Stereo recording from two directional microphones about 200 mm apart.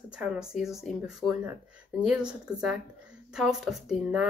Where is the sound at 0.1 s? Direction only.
5° right (ahead or behind).